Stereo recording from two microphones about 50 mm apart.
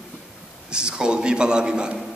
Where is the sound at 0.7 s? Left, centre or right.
Centre.